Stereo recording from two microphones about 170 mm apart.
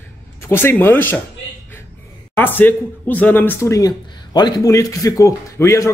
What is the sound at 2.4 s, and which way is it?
A man's voice, 10° left (ahead or behind).